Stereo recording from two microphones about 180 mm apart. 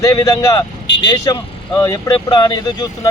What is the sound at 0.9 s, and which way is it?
Vehicle, 70° left (ahead or behind).